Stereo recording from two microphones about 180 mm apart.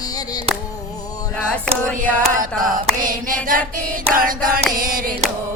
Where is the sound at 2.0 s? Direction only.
45° right (ahead or behind).